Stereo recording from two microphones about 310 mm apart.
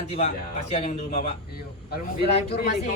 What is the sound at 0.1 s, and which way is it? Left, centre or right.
Speech, centre.